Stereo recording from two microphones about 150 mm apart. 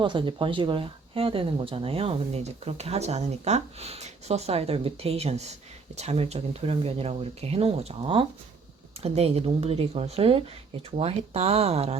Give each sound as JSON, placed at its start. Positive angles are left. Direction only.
{"t": 0.0, "sound": "speech", "side_deg": -30}